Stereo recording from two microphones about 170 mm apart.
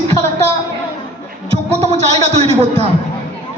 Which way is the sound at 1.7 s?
40° right (ahead or behind).